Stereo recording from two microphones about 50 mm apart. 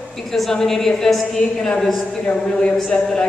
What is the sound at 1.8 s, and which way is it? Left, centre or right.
Speech, centre.